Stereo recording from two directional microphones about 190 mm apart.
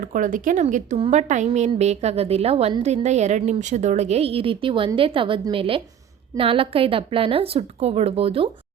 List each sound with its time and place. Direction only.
0.0 s a woman's voice: 45° right (ahead or behind); by 8.4 s 30° right (ahead or behind)